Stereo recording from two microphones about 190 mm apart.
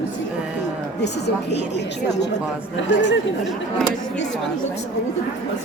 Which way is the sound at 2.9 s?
70° left (ahead or behind).